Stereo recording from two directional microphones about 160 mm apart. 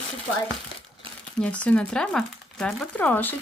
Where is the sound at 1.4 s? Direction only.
10° left (ahead or behind).